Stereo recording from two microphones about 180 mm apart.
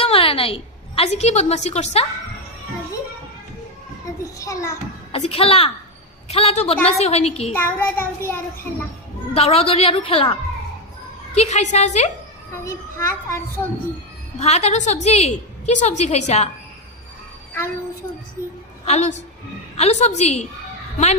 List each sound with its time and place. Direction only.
0.0 s a woman's voice: 30° left (ahead or behind)
4.0 s a child's voice: 15° left (ahead or behind)
5.1 s a woman's voice: 35° left (ahead or behind)
7.5 s a child's voice: 10° left (ahead or behind)
9.3 s a woman's voice: 35° left (ahead or behind)
11.3 s a woman's voice: 40° left (ahead or behind)
12.6 s a child's voice: 15° left (ahead or behind)
14.3 s a woman's voice: 35° left (ahead or behind)
18.4 s a child's voice: 15° left (ahead or behind)
18.9 s a woman's voice: 40° left (ahead or behind)